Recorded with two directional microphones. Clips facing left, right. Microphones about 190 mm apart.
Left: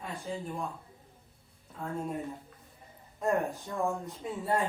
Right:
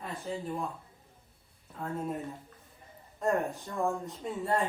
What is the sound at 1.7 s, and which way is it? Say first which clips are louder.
Speech: right 1 dB; centre (ahead or behind).